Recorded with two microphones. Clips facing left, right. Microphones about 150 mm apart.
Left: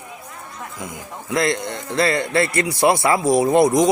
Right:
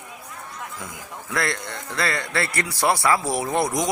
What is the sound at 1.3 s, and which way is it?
A man's voice, 20° left (ahead or behind).